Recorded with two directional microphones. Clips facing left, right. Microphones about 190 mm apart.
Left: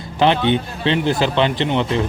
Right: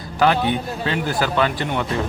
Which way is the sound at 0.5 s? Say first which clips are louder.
Left 4 dB; 25° left (ahead or behind).